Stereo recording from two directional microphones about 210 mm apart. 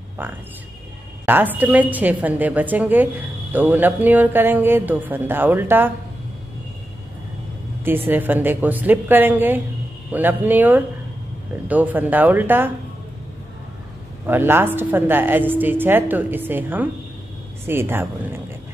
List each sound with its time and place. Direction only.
0.2 s a woman's voice: 10° right (ahead or behind)
8.1 s a woman's voice: 10° right (ahead or behind)
14.2 s a woman's voice: 10° right (ahead or behind)